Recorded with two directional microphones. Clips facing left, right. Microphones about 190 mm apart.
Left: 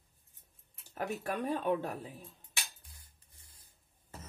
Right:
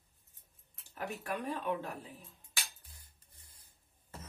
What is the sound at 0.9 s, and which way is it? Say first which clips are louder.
Speech: left 3 dB; 40° left (ahead or behind).